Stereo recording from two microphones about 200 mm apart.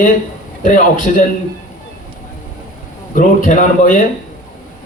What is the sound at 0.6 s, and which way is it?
Speech, 40° left (ahead or behind).